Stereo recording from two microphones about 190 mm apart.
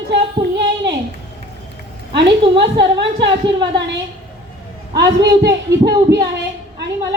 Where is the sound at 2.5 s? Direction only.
65° right (ahead or behind).